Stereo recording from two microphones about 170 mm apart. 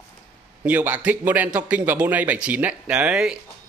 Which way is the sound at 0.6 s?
10° right (ahead or behind).